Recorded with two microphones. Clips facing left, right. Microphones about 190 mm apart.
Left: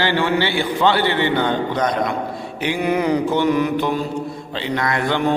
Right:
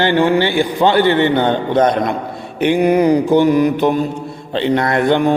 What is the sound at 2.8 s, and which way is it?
Speech, 40° right (ahead or behind).